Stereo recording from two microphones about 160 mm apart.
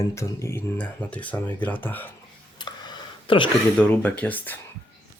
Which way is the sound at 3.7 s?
10° left (ahead or behind).